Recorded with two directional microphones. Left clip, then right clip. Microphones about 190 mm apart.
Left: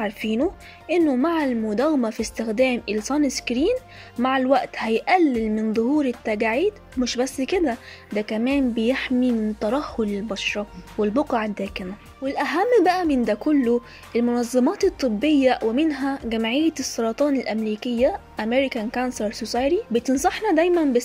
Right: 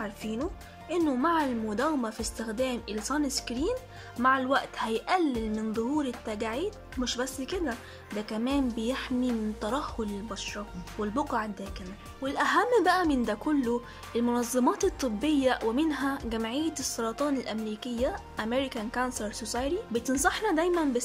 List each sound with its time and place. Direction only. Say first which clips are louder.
0.4 s speech: left 11 dB; 10° left (ahead or behind)